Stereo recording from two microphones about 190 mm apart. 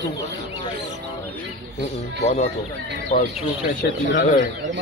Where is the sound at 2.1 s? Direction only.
35° left (ahead or behind).